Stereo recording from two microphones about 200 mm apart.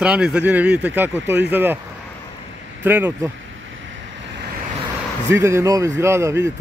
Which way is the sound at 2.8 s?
10° right (ahead or behind).